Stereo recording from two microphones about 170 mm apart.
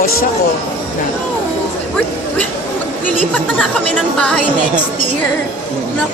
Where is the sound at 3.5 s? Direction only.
5° left (ahead or behind).